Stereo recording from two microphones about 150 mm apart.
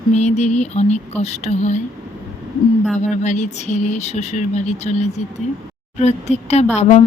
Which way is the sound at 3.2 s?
50° left (ahead or behind).